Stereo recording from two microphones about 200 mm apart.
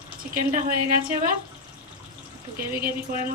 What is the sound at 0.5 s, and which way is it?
Speech, 45° right (ahead or behind).